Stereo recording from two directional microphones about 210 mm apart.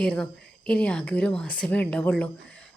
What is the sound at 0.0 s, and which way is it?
A woman's voice, 5° left (ahead or behind).